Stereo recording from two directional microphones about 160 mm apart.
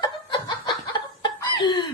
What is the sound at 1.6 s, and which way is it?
Speech, 25° left (ahead or behind).